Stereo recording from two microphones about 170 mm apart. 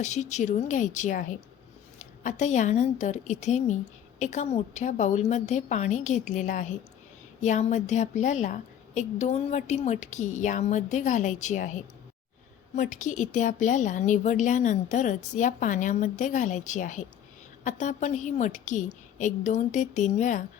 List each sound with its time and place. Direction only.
0.0 s a woman's voice: 45° left (ahead or behind)